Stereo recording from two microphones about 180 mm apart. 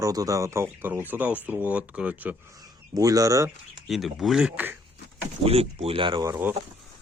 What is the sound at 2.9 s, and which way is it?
Speech, 20° right (ahead or behind).